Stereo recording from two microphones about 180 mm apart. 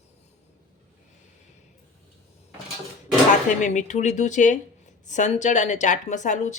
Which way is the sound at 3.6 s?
40° left (ahead or behind).